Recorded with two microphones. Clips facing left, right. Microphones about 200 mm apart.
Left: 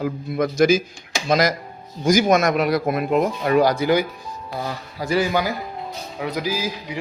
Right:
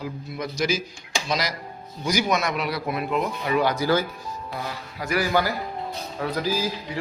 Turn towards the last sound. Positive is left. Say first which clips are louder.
# even
turn(degrees=10)  # may be behind; listen again after turning